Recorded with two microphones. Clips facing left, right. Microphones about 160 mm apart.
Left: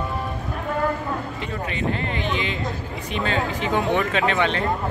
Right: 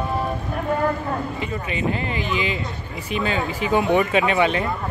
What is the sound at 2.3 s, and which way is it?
Speech, 5° right (ahead or behind).